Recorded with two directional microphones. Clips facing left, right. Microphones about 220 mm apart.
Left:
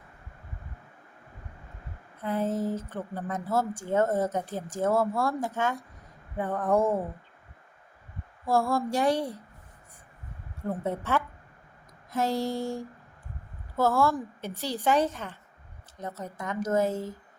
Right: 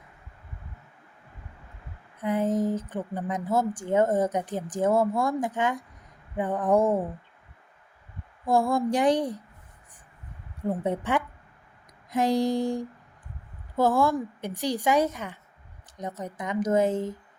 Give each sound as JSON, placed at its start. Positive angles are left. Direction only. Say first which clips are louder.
{"t": 2.2, "sound": "a woman's voice", "louder": "right 3 dB", "side_deg": -15}
{"t": 8.4, "sound": "a woman's voice", "louder": "right 3 dB", "side_deg": -15}
{"t": 10.6, "sound": "a woman's voice", "louder": "right 3 dB", "side_deg": -15}